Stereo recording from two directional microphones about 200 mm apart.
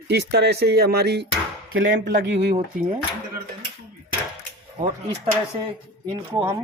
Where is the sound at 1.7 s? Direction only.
75° right (ahead or behind).